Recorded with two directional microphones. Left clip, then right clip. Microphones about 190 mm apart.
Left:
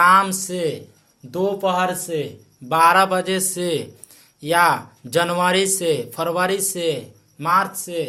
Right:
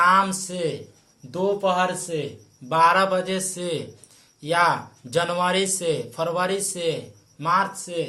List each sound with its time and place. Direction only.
0.0 s speech: 40° left (ahead or behind)